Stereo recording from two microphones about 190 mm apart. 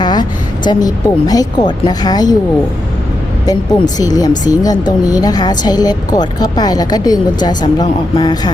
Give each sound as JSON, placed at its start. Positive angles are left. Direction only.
{"t": 0.0, "sound": "speech", "side_deg": 20}
{"t": 3.4, "sound": "speech", "side_deg": 20}